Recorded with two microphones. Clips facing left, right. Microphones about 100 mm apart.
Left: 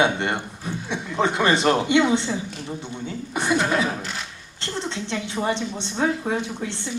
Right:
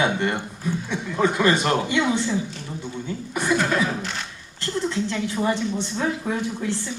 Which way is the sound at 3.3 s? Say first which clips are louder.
Even; 25° left (ahead or behind).